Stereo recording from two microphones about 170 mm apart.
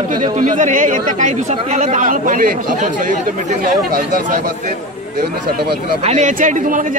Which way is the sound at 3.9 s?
55° right (ahead or behind).